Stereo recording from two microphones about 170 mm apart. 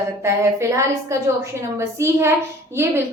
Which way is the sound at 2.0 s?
15° right (ahead or behind).